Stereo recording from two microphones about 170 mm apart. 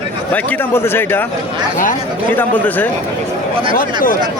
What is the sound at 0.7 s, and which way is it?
Speech, 10° left (ahead or behind).